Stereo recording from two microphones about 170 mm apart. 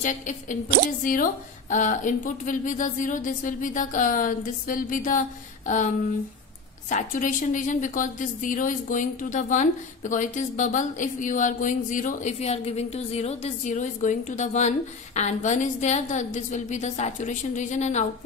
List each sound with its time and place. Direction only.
0.0 s a woman's voice: 50° left (ahead or behind)